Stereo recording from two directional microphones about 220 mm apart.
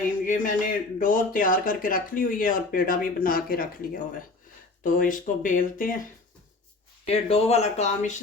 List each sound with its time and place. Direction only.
0.3 s speech: 35° left (ahead or behind)
7.0 s speech: 30° left (ahead or behind)